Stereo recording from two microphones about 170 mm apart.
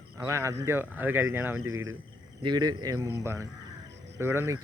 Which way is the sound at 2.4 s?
25° right (ahead or behind).